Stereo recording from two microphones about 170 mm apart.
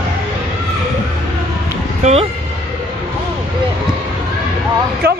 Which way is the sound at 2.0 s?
35° right (ahead or behind).